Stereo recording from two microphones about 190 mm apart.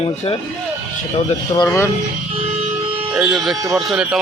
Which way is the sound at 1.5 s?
15° left (ahead or behind).